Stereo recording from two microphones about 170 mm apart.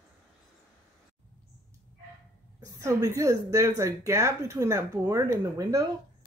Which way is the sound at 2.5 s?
20° right (ahead or behind).